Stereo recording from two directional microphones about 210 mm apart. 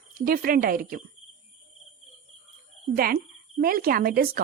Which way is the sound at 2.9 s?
45° right (ahead or behind).